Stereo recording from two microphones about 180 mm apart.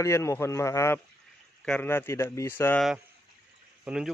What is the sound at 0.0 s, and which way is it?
Speech, 15° left (ahead or behind).